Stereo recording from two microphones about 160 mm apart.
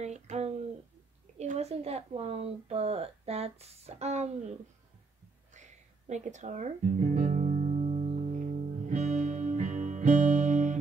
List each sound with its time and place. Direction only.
0.0 s a sound: 45° right (ahead or behind)
1.4 s speech: 45° right (ahead or behind)
5.5 s music: 45° right (ahead or behind)